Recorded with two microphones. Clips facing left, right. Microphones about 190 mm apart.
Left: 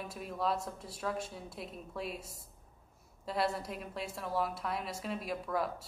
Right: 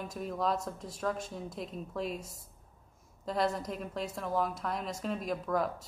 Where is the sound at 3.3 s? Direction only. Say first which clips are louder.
Right 3 dB; 5° left (ahead or behind).